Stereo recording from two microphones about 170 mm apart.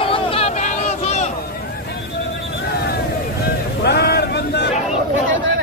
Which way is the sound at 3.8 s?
70° left (ahead or behind).